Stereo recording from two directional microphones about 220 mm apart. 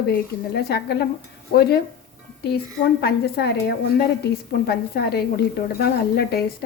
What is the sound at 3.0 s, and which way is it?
A woman's voice, 50° left (ahead or behind).